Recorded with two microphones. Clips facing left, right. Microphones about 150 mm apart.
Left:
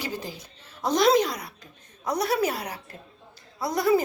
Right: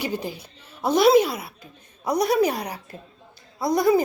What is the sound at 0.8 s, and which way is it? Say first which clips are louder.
A woman's voice: right 4 dB; 10° right (ahead or behind).